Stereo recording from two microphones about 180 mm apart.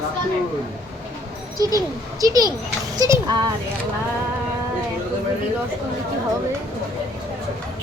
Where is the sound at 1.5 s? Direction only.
20° right (ahead or behind).